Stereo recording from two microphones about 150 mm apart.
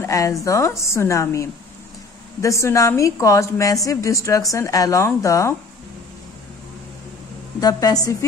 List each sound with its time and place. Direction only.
0.0 s a sound: 20° left (ahead or behind)
0.4 s a woman's voice: 20° left (ahead or behind)
7.6 s a woman's voice: 25° left (ahead or behind)